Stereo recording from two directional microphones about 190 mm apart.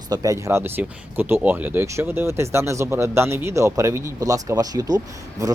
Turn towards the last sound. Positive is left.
turn(degrees=-15)  # may be behind; listen again after turning